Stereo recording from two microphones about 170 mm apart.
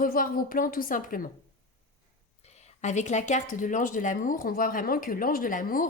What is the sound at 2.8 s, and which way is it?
Speech, 45° left (ahead or behind).